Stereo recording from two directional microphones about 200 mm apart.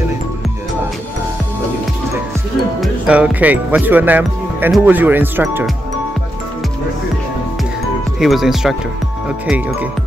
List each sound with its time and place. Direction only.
2.8 s speech: 5° right (ahead or behind)
8.2 s speech: centre (ahead or behind)